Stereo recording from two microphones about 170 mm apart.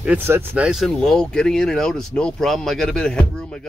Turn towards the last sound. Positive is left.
turn(degrees=5)  # may be behind; listen again after turning